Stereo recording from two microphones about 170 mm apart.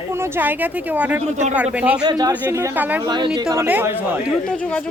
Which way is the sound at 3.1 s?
25° right (ahead or behind).